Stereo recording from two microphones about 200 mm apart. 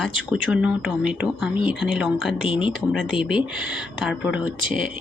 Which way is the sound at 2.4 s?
25° left (ahead or behind).